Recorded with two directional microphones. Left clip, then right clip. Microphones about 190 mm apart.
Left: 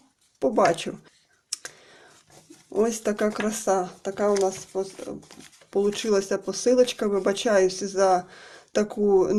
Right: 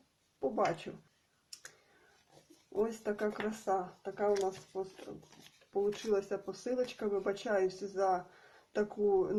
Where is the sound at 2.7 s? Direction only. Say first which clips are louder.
Left 11 dB; 40° left (ahead or behind).